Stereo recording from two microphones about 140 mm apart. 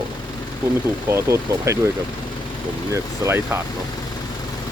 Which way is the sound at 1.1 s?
20° right (ahead or behind).